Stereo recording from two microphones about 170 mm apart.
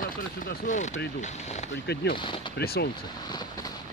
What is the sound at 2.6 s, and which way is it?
Speech, 65° left (ahead or behind).